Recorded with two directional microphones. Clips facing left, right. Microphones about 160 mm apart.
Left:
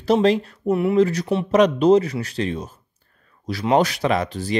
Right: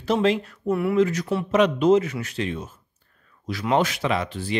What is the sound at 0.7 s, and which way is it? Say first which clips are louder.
Speech: left 3 dB; 20° left (ahead or behind).